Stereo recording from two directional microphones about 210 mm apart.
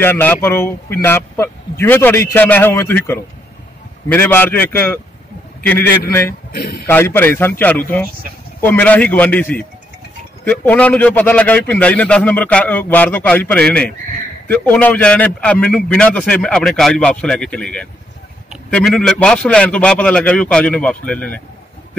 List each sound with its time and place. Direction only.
0.0 s a man's voice: 10° left (ahead or behind)
6.5 s speech: 50° left (ahead or behind)
6.9 s a man's voice: 10° left (ahead or behind)